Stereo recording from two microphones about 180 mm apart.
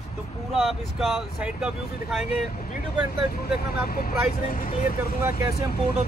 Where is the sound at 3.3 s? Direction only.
55° left (ahead or behind).